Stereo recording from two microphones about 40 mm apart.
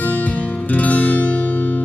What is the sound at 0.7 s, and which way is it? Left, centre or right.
Music, left.